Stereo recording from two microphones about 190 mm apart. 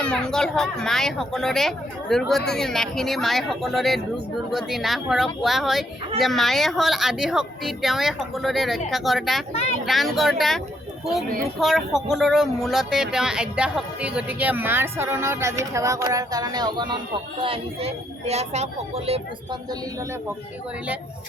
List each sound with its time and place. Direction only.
0.0 s speech: 5° left (ahead or behind)
9.5 s speech: 35° left (ahead or behind)
9.8 s a child's voice: centre (ahead or behind); by 19.2 s 30° right (ahead or behind)